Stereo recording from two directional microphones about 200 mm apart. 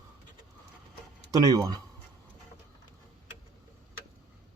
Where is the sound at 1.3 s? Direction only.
15° right (ahead or behind).